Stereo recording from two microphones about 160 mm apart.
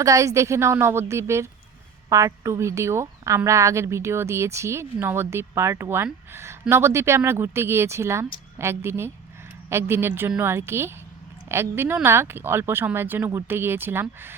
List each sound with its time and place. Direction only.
0.0 s a woman's voice: 20° right (ahead or behind)